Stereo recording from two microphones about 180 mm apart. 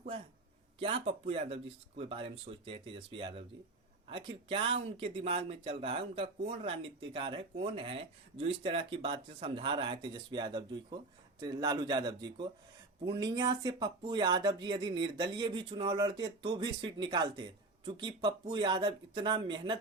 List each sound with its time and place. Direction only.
0.8 s speech: 30° right (ahead or behind)